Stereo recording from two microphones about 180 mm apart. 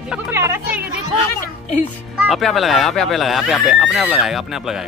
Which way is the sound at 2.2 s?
Centre (ahead or behind).